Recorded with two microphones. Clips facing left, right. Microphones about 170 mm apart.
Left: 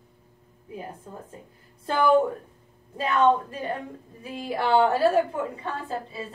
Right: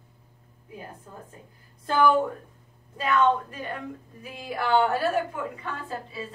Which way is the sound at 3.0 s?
30° left (ahead or behind).